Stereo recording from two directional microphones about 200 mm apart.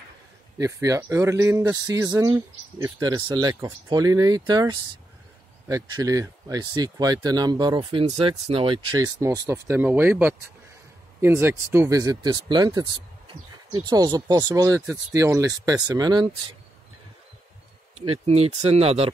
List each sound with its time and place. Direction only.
0.6 s speech: 15° right (ahead or behind)
17.9 s speech: 30° right (ahead or behind)